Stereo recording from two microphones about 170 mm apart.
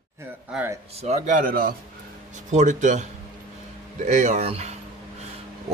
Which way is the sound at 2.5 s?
45° right (ahead or behind).